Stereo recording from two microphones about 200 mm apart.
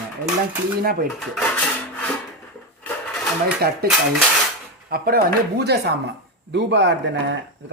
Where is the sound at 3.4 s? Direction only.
50° right (ahead or behind).